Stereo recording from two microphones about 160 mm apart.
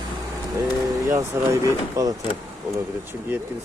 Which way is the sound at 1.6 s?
20° right (ahead or behind).